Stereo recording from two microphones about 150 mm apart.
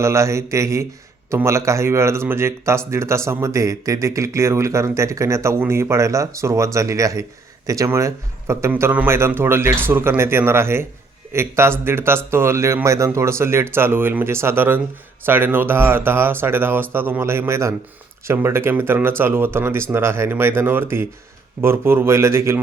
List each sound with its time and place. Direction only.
0.0 s speech: 20° right (ahead or behind)